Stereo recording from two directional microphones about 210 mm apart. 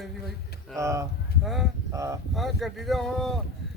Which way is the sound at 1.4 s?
Centre (ahead or behind).